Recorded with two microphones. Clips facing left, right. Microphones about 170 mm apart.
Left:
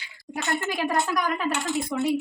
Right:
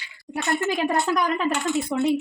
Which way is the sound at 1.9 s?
35° right (ahead or behind).